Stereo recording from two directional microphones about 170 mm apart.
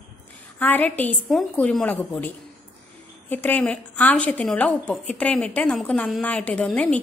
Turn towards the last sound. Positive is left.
turn(degrees=5)  # may be behind; listen again after turning